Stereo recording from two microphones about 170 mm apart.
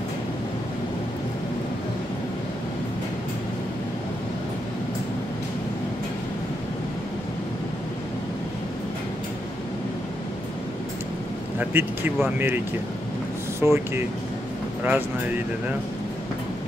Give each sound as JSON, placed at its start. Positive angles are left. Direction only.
{"t": 11.5, "sound": "speech", "side_deg": -10}
{"t": 13.6, "sound": "speech", "side_deg": -15}